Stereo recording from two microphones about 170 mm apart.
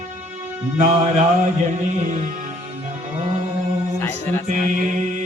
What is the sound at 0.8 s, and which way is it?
Mantra, 45° right (ahead or behind).